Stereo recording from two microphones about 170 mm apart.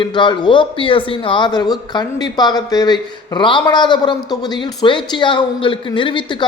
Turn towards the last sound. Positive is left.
turn(degrees=30)  # may be behind; listen again after turning